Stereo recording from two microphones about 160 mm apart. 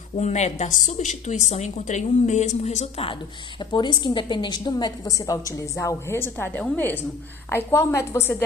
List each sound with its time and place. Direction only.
0.2 s a woman's voice: 45° left (ahead or behind); by 8.4 s 15° left (ahead or behind)